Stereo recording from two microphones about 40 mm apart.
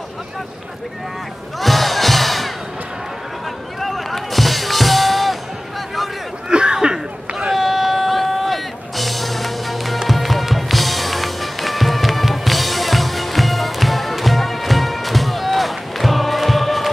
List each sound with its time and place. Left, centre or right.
1.6 s music: centre
3.8 s music: centre
6.5 s a sound: right
7.5 s music: centre